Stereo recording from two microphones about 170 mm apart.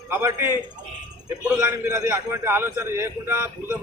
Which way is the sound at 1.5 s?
15° right (ahead or behind).